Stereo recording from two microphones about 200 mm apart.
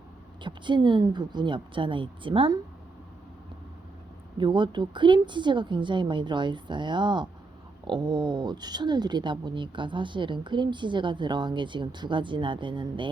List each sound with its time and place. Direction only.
0.4 s speech: 25° right (ahead or behind)
4.4 s speech: 25° right (ahead or behind)